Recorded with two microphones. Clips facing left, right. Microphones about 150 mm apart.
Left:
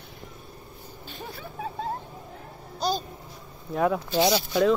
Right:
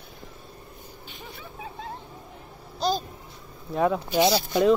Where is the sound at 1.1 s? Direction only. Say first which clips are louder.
Left 5 dB; 40° left (ahead or behind).